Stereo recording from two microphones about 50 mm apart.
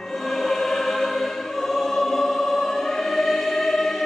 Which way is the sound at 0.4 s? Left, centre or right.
Centre.